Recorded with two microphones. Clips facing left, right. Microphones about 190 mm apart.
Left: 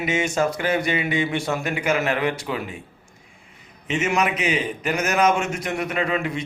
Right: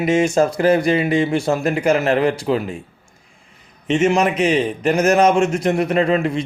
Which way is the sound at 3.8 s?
35° right (ahead or behind).